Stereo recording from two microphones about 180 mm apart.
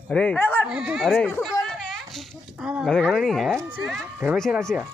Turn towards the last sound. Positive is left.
turn(degrees=0)  # may be behind; listen again after turning